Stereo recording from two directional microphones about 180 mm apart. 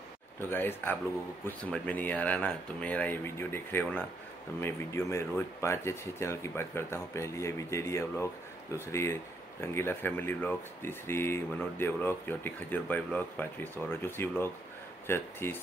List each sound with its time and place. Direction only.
0.5 s speech: 10° left (ahead or behind)